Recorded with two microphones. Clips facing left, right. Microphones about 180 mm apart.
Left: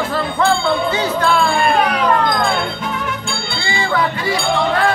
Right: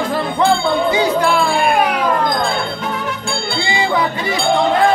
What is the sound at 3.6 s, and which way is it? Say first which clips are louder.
Music: right 1 dB; 20° right (ahead or behind).